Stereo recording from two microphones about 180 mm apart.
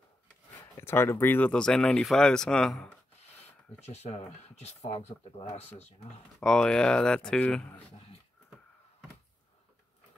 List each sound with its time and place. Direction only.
0.7 s speech: 15° left (ahead or behind)
3.9 s speech: 35° left (ahead or behind)
6.4 s speech: 5° left (ahead or behind)